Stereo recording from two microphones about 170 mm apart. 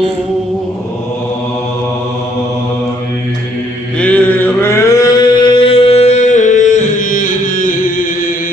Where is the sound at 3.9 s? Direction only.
10° left (ahead or behind); by 8.0 s 50° left (ahead or behind).